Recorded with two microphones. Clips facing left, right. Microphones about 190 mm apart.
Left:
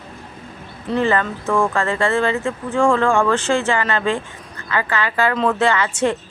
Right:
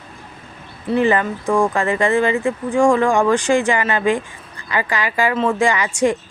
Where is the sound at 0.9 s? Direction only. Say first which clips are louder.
Right 2 dB; 15° right (ahead or behind).